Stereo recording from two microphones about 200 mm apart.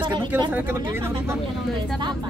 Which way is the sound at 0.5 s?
10° right (ahead or behind).